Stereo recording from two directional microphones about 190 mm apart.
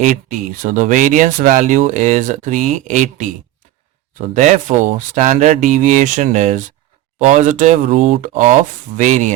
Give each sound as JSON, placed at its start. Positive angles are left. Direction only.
{"t": 0.0, "sound": "speech", "side_deg": -40}